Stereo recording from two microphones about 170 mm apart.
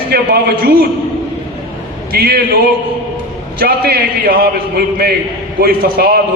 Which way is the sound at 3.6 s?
65° right (ahead or behind).